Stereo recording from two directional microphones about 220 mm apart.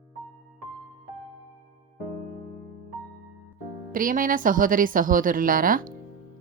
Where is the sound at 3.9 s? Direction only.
40° right (ahead or behind).